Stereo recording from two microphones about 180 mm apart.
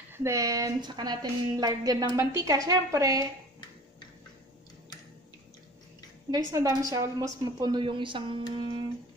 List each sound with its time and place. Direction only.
0.1 s a woman's voice: 15° right (ahead or behind)
6.3 s a woman's voice: 20° right (ahead or behind)